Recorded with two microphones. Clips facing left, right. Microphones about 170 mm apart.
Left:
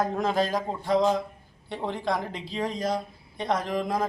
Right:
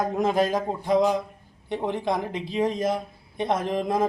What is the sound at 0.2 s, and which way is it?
A man's voice, 20° right (ahead or behind).